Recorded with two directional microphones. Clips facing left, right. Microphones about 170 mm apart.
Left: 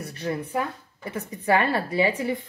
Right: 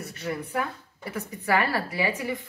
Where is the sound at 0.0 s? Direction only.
30° left (ahead or behind).